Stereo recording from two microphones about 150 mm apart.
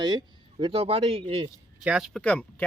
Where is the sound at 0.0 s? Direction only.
30° right (ahead or behind).